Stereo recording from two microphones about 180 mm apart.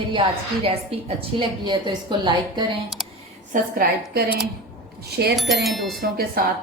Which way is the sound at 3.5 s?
55° right (ahead or behind).